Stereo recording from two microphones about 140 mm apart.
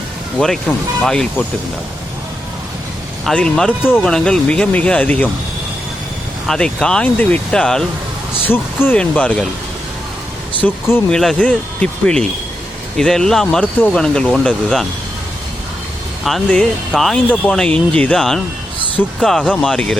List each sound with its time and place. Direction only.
0.3 s speech: 5° left (ahead or behind)
3.2 s speech: 5° left (ahead or behind)
6.5 s speech: 5° left (ahead or behind)
10.6 s speech: 15° left (ahead or behind)
11.1 s speech: 5° left (ahead or behind)
16.2 s speech: 5° left (ahead or behind)